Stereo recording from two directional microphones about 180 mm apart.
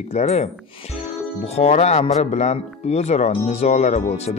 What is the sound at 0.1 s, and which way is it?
Speech, 35° left (ahead or behind).